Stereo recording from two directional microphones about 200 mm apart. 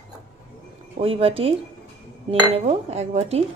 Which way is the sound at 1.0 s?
30° right (ahead or behind).